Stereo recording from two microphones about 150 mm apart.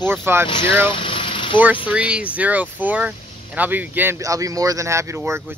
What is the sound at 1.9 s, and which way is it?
Speech, 5° right (ahead or behind).